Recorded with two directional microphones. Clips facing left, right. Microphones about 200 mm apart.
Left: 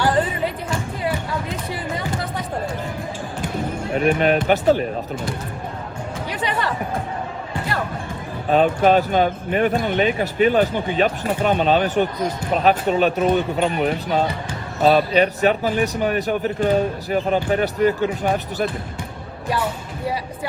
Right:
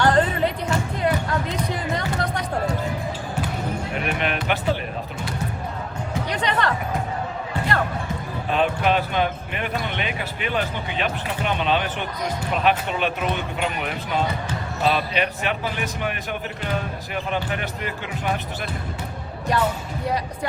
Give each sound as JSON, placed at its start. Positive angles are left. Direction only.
{"t": 0.0, "sound": "music", "side_deg": 5}
{"t": 4.0, "sound": "music", "side_deg": 40}
{"t": 6.3, "sound": "music", "side_deg": 5}
{"t": 8.4, "sound": "speech", "side_deg": 40}